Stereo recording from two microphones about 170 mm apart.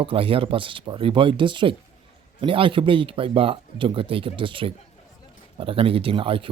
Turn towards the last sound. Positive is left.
turn(degrees=-30)  # may be behind; listen again after turning